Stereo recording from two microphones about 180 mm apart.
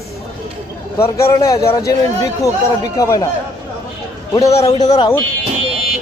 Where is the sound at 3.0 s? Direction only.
20° left (ahead or behind).